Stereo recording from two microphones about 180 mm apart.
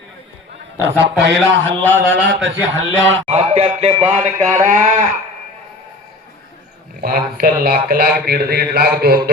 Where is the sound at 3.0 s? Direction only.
90° right.